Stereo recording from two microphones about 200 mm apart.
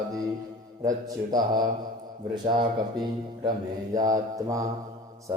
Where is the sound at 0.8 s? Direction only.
20° right (ahead or behind).